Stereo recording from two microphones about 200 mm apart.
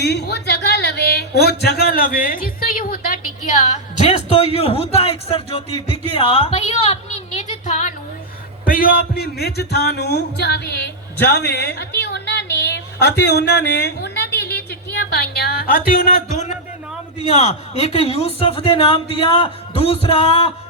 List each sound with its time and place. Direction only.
0.0 s speech: 55° left (ahead or behind)
3.6 s a woman's voice: 35° left (ahead or behind); by 14.3 s 55° left (ahead or behind)
14.5 s a sound: 55° left (ahead or behind)
17.3 s speech: 30° left (ahead or behind)